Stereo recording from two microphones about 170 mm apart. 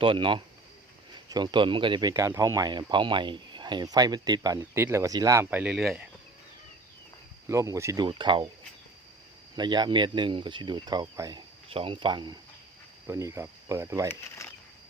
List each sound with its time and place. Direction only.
0.0 s speech: 30° right (ahead or behind); by 6.1 s centre (ahead or behind)
7.4 s cricket: 20° right (ahead or behind)
8.0 s speech: 30° right (ahead or behind)
9.6 s speech: 25° right (ahead or behind)
13.1 s cricket: 15° right (ahead or behind)
14.1 s speech: 15° left (ahead or behind)